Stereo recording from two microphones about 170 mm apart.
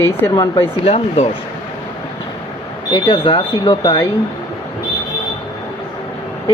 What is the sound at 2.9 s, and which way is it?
Speech, 30° left (ahead or behind).